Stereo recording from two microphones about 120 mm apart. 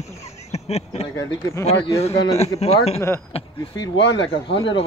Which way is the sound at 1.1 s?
25° left (ahead or behind).